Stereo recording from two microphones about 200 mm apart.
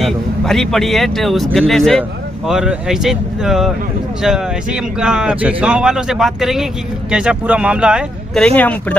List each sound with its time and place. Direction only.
0.0 s speech: centre (ahead or behind)